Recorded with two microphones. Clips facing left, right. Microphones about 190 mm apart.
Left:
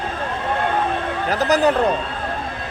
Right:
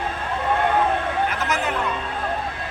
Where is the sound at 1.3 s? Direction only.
35° left (ahead or behind).